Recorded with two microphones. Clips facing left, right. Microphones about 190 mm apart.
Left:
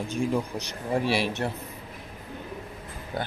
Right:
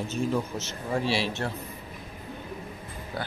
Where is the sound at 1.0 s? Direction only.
55° left (ahead or behind).